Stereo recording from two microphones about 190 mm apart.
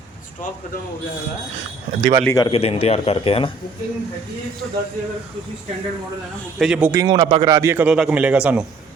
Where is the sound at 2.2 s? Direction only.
20° left (ahead or behind).